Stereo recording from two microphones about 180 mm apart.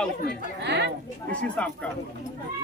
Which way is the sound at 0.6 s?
70° right (ahead or behind).